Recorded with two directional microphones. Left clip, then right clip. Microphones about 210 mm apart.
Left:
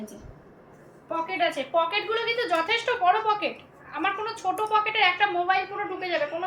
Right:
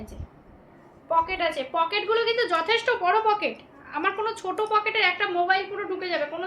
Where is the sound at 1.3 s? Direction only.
35° right (ahead or behind).